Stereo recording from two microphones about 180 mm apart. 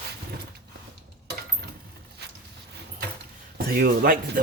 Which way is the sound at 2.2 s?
65° right (ahead or behind).